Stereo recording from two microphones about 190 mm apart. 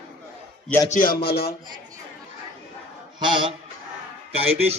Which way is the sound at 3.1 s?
25° right (ahead or behind).